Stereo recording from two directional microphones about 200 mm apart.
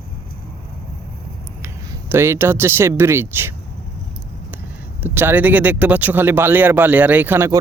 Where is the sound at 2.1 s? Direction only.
10° right (ahead or behind).